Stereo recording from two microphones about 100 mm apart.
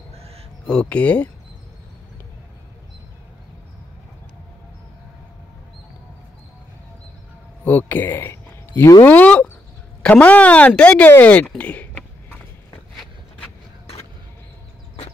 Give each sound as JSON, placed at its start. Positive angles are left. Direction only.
{"t": 0.1, "sound": "a sound", "side_deg": -90}
{"t": 0.7, "sound": "speech", "side_deg": 10}
{"t": 7.6, "sound": "speech", "side_deg": 20}